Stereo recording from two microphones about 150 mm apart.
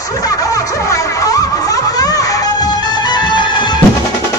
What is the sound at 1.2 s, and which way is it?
Music, 25° left (ahead or behind).